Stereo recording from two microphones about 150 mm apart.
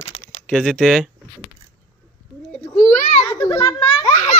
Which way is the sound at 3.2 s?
20° left (ahead or behind).